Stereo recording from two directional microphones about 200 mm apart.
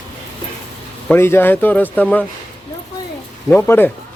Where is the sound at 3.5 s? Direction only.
10° left (ahead or behind).